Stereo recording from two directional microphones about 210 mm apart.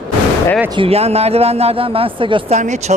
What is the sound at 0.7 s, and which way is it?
Speech, 25° right (ahead or behind).